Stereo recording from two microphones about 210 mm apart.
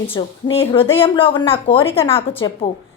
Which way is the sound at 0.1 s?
25° left (ahead or behind).